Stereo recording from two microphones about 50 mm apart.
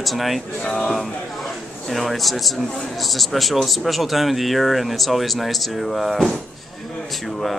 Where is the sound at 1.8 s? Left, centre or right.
Centre.